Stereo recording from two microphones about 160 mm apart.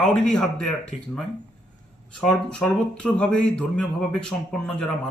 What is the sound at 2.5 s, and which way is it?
A man's voice, 5° left (ahead or behind).